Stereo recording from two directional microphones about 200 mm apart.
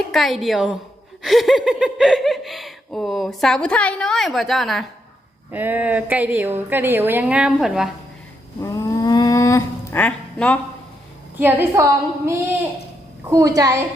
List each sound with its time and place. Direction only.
0.1 s a woman's voice: centre (ahead or behind)
8.6 s a sound: 15° left (ahead or behind)
11.3 s a woman's voice: 10° right (ahead or behind)